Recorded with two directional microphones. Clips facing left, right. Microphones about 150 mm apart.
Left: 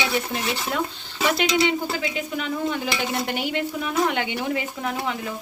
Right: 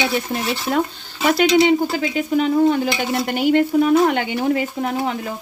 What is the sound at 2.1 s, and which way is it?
Speech, 40° right (ahead or behind).